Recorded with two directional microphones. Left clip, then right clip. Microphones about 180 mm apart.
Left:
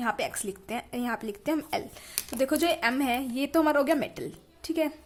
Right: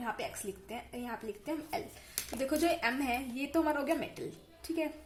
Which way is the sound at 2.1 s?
30° left (ahead or behind).